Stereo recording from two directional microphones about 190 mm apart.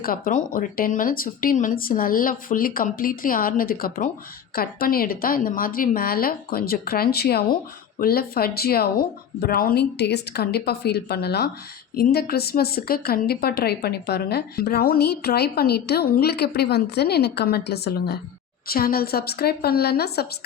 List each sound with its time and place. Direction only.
0.0 s a woman's voice: 45° left (ahead or behind)